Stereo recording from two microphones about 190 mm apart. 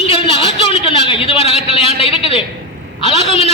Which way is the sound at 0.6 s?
30° left (ahead or behind).